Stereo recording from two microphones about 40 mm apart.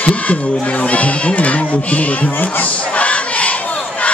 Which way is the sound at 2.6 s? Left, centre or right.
Left.